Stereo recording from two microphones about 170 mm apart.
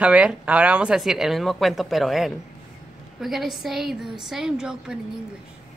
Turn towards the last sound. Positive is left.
turn(degrees=-5)  # may be behind; listen again after turning